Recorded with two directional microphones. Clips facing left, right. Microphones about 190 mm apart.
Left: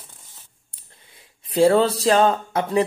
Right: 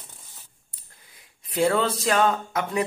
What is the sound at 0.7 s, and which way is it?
Speech, 30° left (ahead or behind).